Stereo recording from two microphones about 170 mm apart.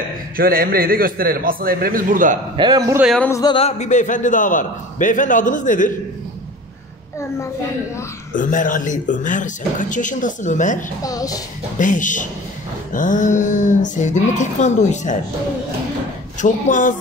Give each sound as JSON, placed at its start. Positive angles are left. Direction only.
{"t": 0.4, "sound": "a man's voice", "side_deg": -60}
{"t": 2.5, "sound": "a man's voice", "side_deg": -30}
{"t": 3.3, "sound": "a sound", "side_deg": 15}
{"t": 3.5, "sound": "a man's voice", "side_deg": 40}
{"t": 8.4, "sound": "a man's voice", "side_deg": 50}
{"t": 11.0, "sound": "a woman's voice", "side_deg": 20}
{"t": 11.8, "sound": "a man's voice", "side_deg": 50}
{"t": 16.3, "sound": "a man's voice", "side_deg": 45}